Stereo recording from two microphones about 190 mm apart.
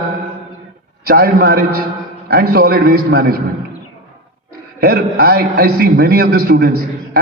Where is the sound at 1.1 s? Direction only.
50° right (ahead or behind).